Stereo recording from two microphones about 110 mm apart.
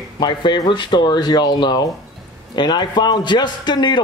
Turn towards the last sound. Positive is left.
turn(degrees=40)  # may be behind; listen again after turning